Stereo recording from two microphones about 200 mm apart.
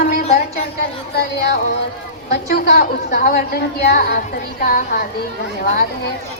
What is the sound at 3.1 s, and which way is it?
A woman's voice, 45° left (ahead or behind).